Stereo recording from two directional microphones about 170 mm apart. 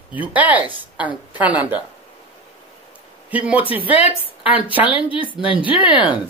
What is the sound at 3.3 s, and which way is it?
Speech, 5° right (ahead or behind).